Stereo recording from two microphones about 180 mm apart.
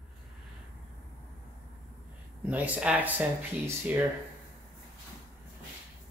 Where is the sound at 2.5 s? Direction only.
5° right (ahead or behind).